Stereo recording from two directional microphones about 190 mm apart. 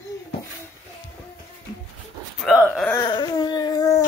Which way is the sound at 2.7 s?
5° left (ahead or behind).